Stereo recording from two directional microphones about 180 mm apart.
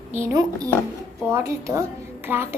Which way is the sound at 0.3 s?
20° right (ahead or behind).